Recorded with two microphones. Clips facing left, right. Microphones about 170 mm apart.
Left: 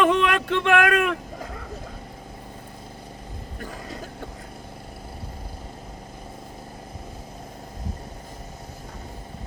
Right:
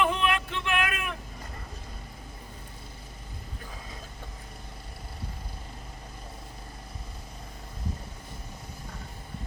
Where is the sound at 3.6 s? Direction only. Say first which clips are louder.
Left 11 dB; 75° left (ahead or behind).